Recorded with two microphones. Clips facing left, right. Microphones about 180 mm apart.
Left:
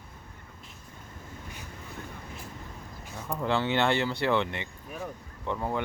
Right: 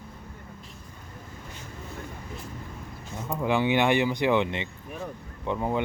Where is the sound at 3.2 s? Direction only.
5° right (ahead or behind).